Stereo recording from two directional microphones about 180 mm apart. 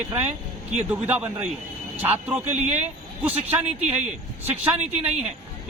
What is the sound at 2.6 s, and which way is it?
Speech, 40° right (ahead or behind).